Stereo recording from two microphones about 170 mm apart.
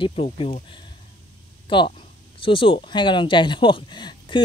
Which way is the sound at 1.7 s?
30° left (ahead or behind).